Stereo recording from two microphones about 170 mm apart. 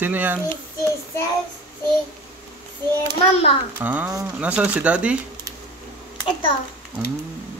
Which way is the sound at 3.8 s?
10° right (ahead or behind).